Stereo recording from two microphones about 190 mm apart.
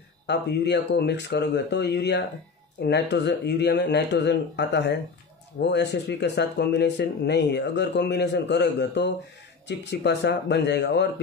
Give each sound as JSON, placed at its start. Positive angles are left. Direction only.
{"t": 0.3, "sound": "speech", "side_deg": 60}